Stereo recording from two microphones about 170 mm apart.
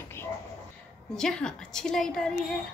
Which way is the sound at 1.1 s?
5° left (ahead or behind).